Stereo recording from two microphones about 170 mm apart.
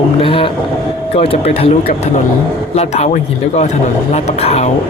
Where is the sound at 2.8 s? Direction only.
40° left (ahead or behind).